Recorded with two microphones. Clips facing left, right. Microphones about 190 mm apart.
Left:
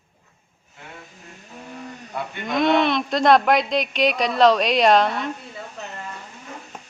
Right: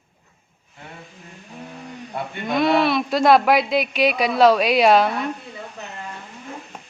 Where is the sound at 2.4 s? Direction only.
5° right (ahead or behind).